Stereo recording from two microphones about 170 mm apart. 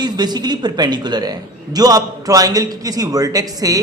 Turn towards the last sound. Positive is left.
turn(degrees=-20)  # may be behind; listen again after turning